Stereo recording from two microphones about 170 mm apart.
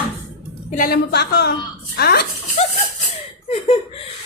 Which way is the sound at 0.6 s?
55° left (ahead or behind).